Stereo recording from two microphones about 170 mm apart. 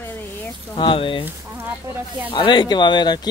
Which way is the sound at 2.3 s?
30° left (ahead or behind).